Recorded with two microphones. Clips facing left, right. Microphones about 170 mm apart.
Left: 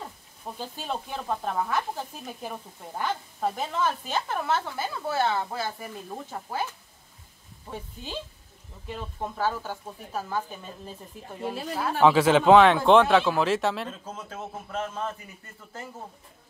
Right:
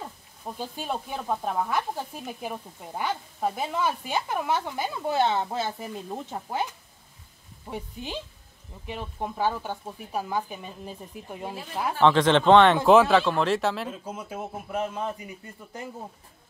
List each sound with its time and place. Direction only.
0.6 s speech: 10° right (ahead or behind)
7.7 s speech: 15° right (ahead or behind)
12.0 s speech: 5° left (ahead or behind)
14.0 s speech: 10° right (ahead or behind)